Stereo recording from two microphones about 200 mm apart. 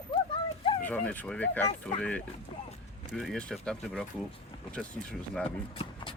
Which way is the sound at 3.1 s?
5° left (ahead or behind).